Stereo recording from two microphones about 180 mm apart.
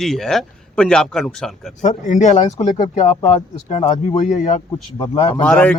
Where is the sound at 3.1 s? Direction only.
25° left (ahead or behind).